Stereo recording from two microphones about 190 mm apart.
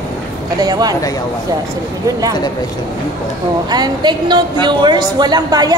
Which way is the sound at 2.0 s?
20° right (ahead or behind).